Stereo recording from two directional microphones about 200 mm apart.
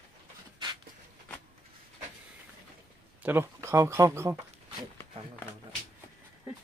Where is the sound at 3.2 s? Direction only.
10° right (ahead or behind).